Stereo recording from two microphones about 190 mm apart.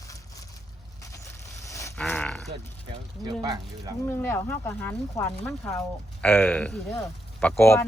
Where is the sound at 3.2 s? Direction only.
25° right (ahead or behind).